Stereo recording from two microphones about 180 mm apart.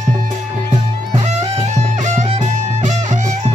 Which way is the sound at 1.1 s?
35° right (ahead or behind).